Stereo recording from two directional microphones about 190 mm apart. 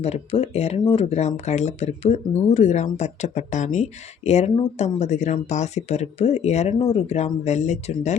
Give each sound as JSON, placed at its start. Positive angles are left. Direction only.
{"t": 0.0, "sound": "speech", "side_deg": 35}